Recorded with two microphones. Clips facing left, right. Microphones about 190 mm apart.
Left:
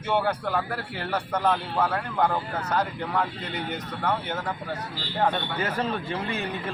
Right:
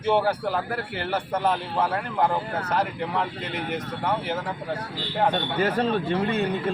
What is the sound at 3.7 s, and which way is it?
Speech, 10° right (ahead or behind).